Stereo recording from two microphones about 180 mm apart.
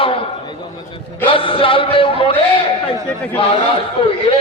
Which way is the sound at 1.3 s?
30° left (ahead or behind).